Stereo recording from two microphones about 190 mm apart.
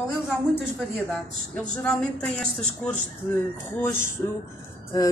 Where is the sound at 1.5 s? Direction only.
10° left (ahead or behind).